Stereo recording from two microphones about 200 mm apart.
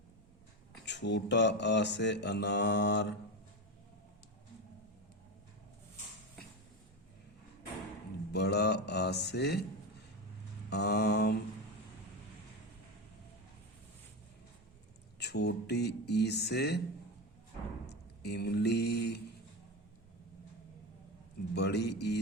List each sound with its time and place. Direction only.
0.9 s mantra: 60° left (ahead or behind)
8.3 s mantra: 55° left (ahead or behind)
10.7 s mantra: 55° left (ahead or behind)
15.2 s mantra: 55° left (ahead or behind)
17.8 s speech: 55° left (ahead or behind)
21.5 s mantra: 55° left (ahead or behind)